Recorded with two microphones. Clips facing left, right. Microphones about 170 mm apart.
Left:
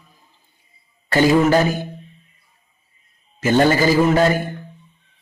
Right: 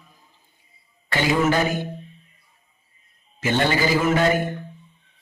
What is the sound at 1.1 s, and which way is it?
Speech, 40° left (ahead or behind).